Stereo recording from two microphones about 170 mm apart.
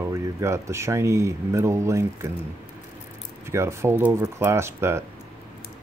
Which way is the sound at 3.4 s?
15° right (ahead or behind).